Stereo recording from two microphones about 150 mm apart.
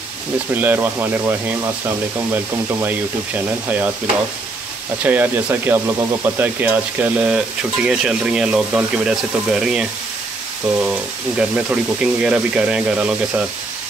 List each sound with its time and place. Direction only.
0.6 s speech: 15° right (ahead or behind)
5.0 s speech: 10° right (ahead or behind)
11.3 s speech: 10° right (ahead or behind)